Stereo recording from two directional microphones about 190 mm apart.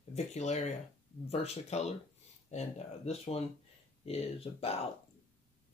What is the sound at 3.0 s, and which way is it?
Speech, 30° left (ahead or behind).